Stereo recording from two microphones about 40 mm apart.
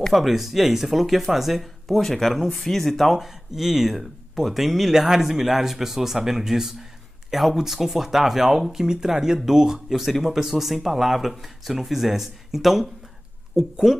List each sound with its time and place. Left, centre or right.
0.1 s speech: centre